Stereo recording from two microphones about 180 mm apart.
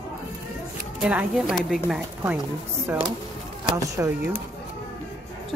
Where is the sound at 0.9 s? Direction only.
5° right (ahead or behind).